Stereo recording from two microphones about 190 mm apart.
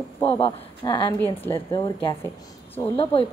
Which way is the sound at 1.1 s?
10° left (ahead or behind).